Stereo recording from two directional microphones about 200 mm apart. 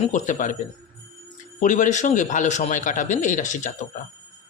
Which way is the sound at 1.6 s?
40° left (ahead or behind).